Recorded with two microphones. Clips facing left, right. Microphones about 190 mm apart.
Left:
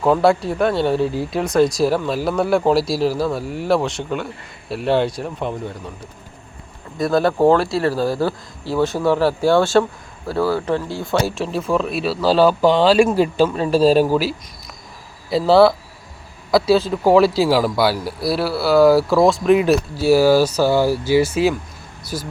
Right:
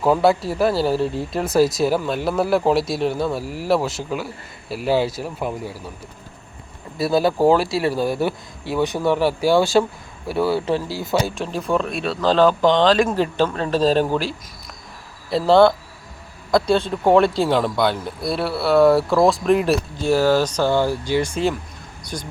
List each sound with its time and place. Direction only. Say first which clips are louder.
0.0 s speech: left 1 dB; centre (ahead or behind)
7.0 s speech: left 1 dB; 5° right (ahead or behind)
7.9 s speech: left 1 dB; 20° right (ahead or behind)
9.0 s speech: left 1 dB; centre (ahead or behind)
10.2 s speech: left 1 dB; 25° right (ahead or behind)
10.8 s speech: left 1 dB; 5° right (ahead or behind)